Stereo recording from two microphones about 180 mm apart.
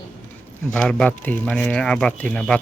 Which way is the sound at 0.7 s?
5° left (ahead or behind).